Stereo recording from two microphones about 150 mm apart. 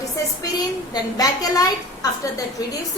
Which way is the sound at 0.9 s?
25° left (ahead or behind).